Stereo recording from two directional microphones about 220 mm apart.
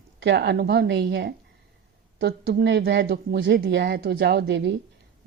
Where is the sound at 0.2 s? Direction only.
50° right (ahead or behind).